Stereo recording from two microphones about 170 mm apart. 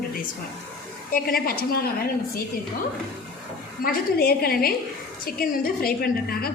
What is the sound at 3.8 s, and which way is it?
A woman's voice, 65° left (ahead or behind).